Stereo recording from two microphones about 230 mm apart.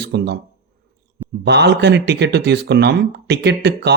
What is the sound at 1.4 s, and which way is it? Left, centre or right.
Speech, right.